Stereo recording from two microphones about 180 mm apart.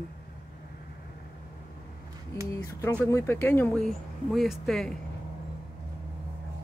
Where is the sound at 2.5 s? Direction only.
15° left (ahead or behind).